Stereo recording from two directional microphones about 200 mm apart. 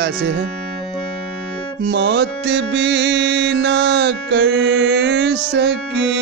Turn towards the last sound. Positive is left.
turn(degrees=-60)  # may be behind; listen again after turning